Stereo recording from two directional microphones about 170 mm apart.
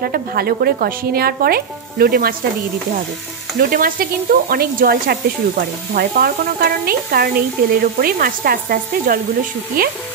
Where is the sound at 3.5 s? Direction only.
60° right (ahead or behind).